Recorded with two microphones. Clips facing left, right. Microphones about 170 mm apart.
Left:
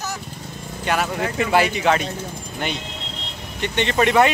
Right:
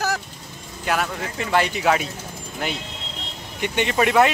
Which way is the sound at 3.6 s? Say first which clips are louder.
Left 1 dB; 10° right (ahead or behind).